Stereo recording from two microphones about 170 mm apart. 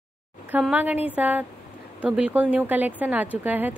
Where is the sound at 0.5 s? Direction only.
5° right (ahead or behind).